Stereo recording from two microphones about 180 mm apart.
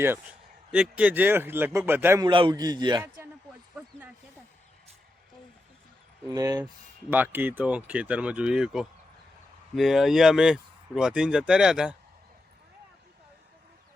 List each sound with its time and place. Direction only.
0.7 s speech: 5° right (ahead or behind)
2.2 s a man's voice: 25° right (ahead or behind)
6.3 s a man's voice: 20° right (ahead or behind); by 11.9 s 5° right (ahead or behind)